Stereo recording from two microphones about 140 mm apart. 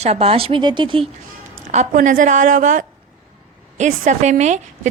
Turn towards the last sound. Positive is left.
turn(degrees=-60)  # may be behind; listen again after turning